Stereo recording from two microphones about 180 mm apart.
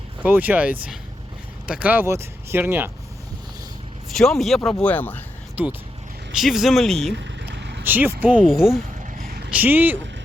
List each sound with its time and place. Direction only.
0.2 s speech: 10° right (ahead or behind)
4.1 s speech: centre (ahead or behind)
5.6 s speech: 5° right (ahead or behind)
7.2 s a sound: 70° right (ahead or behind)
7.9 s speech: 10° right (ahead or behind)